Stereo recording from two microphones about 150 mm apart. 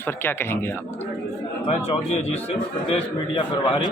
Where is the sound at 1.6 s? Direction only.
45° left (ahead or behind).